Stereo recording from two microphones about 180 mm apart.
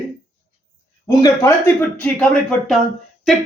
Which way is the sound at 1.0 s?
20° left (ahead or behind).